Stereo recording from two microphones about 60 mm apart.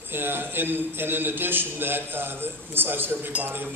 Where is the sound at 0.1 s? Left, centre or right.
Right.